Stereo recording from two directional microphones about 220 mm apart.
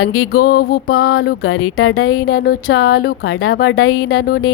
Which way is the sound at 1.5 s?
75° left (ahead or behind).